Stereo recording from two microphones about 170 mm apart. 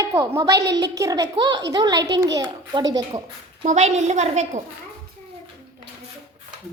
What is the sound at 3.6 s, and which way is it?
A woman's voice, 40° right (ahead or behind).